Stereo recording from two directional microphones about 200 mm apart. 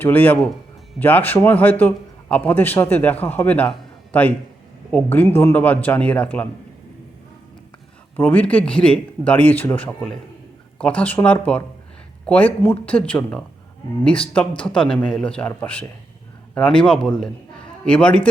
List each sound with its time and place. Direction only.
0.0 s speech: 10° left (ahead or behind)
8.1 s a man's voice: 10° left (ahead or behind)